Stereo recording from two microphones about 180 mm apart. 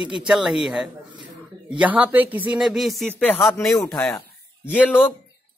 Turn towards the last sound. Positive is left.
turn(degrees=10)  # may be behind; listen again after turning